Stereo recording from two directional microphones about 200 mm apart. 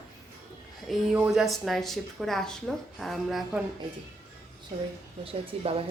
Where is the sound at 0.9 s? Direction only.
5° right (ahead or behind).